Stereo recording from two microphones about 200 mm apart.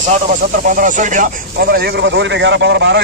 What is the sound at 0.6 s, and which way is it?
Speech, 40° right (ahead or behind).